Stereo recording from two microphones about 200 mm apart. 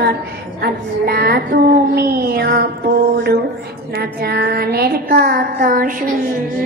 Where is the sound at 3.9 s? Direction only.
50° right (ahead or behind).